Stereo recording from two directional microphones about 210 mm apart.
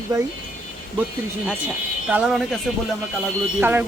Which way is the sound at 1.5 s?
5° right (ahead or behind).